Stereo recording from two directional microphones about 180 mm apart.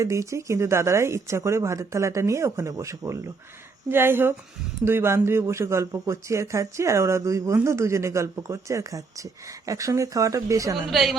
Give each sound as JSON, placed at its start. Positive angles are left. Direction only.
{"t": 0.0, "sound": "speech", "side_deg": -15}
{"t": 10.9, "sound": "a woman's voice", "side_deg": 0}